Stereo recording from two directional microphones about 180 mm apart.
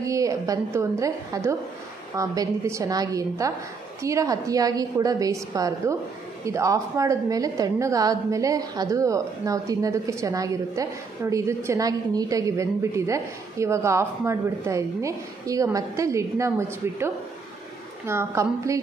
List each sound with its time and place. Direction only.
0.0 s a woman's voice: 20° right (ahead or behind)